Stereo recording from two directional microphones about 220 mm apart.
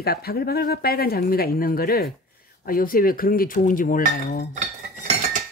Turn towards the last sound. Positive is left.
turn(degrees=-30)  # may be behind; listen again after turning